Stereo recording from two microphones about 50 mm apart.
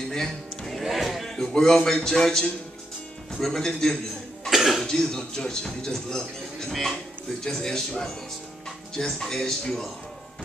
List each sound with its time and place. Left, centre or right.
0.1 s a sound: centre
0.8 s a sound: centre
1.3 s speech: centre
4.5 s cough: centre
4.8 s speech: centre
6.7 s speech: centre
7.4 s speech: centre